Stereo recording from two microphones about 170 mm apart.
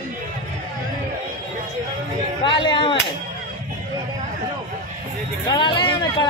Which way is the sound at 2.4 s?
25° left (ahead or behind).